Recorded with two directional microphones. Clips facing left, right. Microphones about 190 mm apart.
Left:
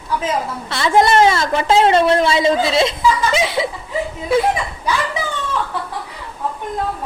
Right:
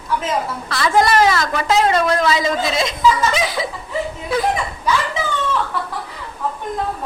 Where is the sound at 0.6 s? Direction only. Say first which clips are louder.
Left 2 dB; 25° left (ahead or behind).